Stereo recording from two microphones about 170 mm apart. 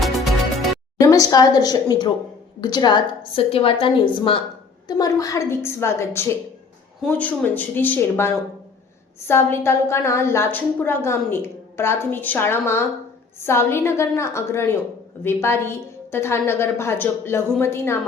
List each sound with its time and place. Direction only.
0.9 s a woman's voice: 20° left (ahead or behind)